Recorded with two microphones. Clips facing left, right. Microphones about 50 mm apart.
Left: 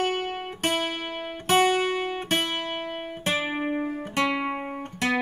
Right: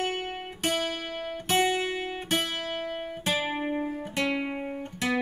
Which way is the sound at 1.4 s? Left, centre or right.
Left.